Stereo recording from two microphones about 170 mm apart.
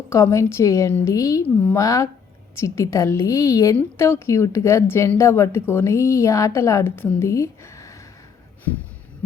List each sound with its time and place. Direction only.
0.1 s a woman's voice: 15° left (ahead or behind)